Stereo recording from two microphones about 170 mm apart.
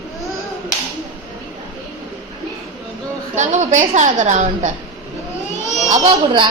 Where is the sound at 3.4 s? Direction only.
45° right (ahead or behind).